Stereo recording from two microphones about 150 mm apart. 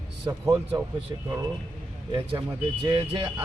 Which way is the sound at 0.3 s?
20° right (ahead or behind).